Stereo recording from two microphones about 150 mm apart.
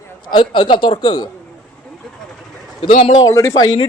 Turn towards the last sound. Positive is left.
turn(degrees=30)  # may be behind; listen again after turning